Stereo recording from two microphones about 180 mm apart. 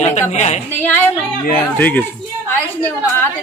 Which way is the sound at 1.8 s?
10° left (ahead or behind).